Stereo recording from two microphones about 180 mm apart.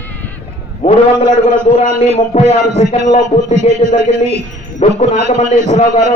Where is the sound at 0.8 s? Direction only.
35° left (ahead or behind).